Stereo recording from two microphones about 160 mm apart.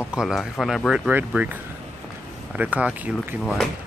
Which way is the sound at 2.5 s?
10° right (ahead or behind).